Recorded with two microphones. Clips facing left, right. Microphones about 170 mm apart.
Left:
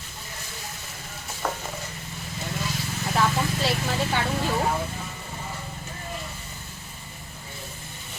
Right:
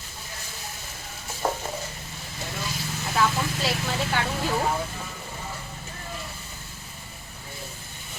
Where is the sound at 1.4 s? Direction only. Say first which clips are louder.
Right 3 dB; 25° right (ahead or behind).